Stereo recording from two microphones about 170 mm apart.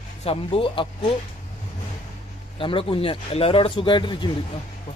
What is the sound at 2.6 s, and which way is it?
Speech, 30° left (ahead or behind).